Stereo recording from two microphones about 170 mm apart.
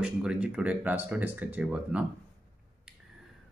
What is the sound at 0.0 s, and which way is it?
Speech, 5° right (ahead or behind).